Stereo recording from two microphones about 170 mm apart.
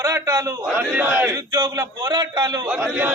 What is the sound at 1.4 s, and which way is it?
Speech, 25° right (ahead or behind).